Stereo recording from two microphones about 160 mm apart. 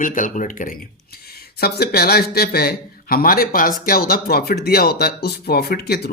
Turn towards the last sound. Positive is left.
turn(degrees=80)